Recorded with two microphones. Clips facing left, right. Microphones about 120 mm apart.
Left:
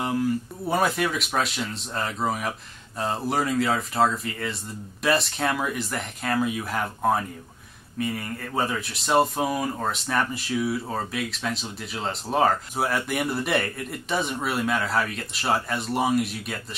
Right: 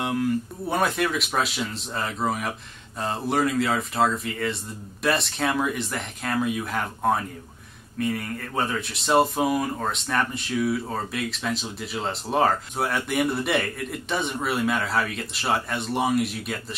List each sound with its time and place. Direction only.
0.7 s speech: centre (ahead or behind)